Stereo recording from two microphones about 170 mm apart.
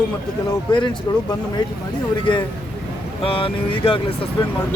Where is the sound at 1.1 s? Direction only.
25° left (ahead or behind).